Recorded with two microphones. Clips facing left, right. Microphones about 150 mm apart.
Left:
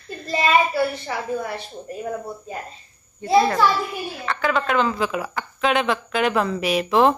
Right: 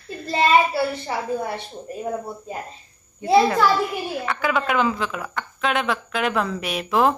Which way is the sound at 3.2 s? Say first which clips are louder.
Right 1 dB; 15° right (ahead or behind).